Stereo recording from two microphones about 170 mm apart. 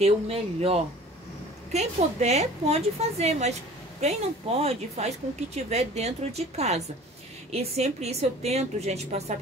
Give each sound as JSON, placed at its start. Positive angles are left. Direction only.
{"t": 0.0, "sound": "speech", "side_deg": -35}